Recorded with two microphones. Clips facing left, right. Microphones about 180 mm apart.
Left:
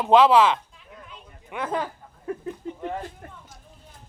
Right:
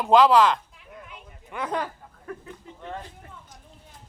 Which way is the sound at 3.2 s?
55° left (ahead or behind).